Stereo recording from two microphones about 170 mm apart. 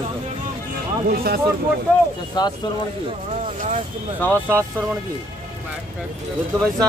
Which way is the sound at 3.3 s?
45° right (ahead or behind).